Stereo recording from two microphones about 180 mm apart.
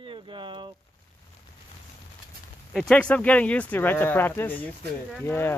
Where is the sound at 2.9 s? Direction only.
5° left (ahead or behind).